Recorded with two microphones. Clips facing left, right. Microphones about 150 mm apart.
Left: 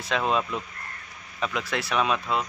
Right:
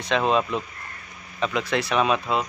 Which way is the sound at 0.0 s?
5° left (ahead or behind).